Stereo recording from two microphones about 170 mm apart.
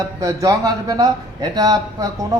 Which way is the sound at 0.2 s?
20° right (ahead or behind).